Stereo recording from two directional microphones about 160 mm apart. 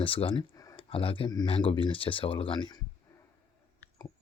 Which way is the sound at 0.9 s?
35° left (ahead or behind).